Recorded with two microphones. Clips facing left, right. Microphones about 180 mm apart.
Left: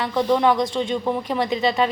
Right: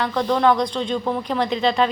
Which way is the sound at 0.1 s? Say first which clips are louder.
Left 2 dB; 15° left (ahead or behind).